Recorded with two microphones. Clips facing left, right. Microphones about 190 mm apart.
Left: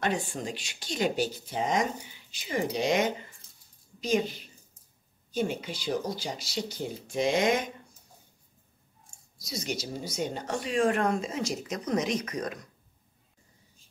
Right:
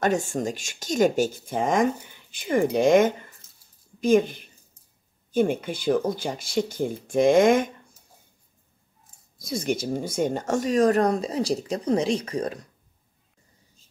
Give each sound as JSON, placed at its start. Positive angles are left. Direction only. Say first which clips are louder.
{"t": 0.0, "sound": "speech", "louder": "right 7 dB", "side_deg": -45}
{"t": 9.4, "sound": "speech", "louder": "right 8 dB", "side_deg": -50}